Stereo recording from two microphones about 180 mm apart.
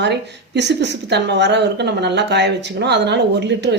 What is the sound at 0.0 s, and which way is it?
A woman's voice, 70° right (ahead or behind).